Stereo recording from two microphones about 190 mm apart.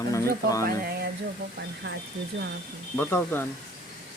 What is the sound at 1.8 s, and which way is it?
Speech, 65° right (ahead or behind).